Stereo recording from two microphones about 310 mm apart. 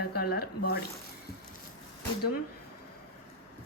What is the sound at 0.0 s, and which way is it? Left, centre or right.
Speech, left.